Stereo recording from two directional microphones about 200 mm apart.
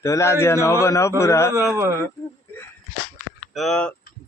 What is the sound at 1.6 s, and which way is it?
Speech, 15° right (ahead or behind).